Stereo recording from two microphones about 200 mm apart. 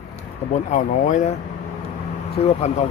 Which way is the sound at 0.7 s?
40° left (ahead or behind).